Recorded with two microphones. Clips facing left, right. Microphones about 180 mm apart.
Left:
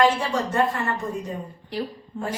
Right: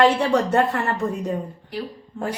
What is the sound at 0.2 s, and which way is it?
Speech, 65° right (ahead or behind).